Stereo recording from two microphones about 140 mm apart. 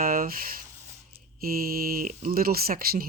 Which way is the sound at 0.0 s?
90° right.